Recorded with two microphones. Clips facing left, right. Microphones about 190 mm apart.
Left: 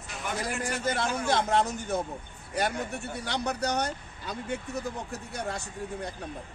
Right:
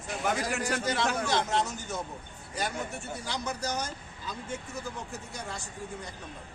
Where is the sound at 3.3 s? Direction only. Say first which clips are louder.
Left 4 dB; 60° left (ahead or behind).